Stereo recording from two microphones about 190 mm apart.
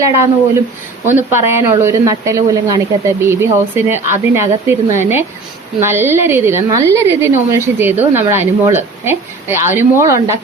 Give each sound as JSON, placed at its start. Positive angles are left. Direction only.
{"t": 1.0, "sound": "a woman's voice", "side_deg": -10}